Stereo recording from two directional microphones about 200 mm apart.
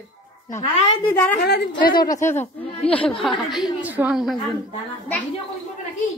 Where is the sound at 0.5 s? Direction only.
30° left (ahead or behind).